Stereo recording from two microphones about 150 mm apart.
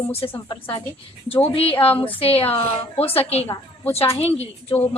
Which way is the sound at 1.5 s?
40° left (ahead or behind).